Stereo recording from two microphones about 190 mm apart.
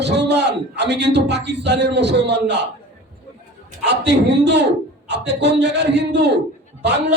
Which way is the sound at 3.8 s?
65° right (ahead or behind).